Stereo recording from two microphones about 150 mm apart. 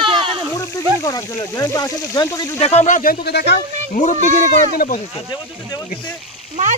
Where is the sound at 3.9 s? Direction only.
55° left (ahead or behind).